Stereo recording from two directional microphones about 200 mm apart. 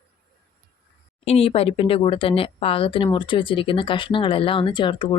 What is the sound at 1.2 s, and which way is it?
Speech, 30° left (ahead or behind).